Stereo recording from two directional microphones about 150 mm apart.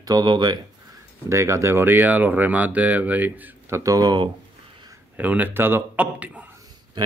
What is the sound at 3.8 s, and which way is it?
Speech, 25° right (ahead or behind).